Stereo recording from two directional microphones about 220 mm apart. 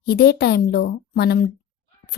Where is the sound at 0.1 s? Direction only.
45° left (ahead or behind).